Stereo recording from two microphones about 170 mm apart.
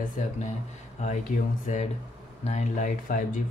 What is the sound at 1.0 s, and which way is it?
Speech, 40° left (ahead or behind).